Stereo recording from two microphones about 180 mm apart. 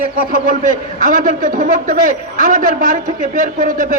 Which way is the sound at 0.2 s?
50° right (ahead or behind).